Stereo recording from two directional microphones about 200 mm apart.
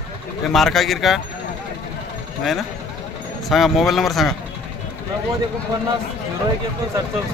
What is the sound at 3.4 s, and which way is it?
Speech, centre (ahead or behind).